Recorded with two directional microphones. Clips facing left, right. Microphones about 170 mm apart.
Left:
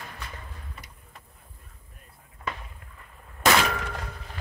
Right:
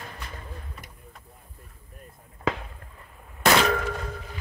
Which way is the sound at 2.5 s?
90° right.